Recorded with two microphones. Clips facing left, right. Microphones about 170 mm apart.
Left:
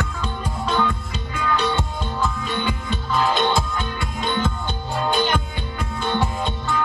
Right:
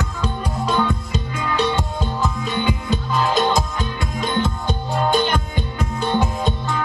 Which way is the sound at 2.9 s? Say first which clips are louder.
Right 1 dB; 40° right (ahead or behind).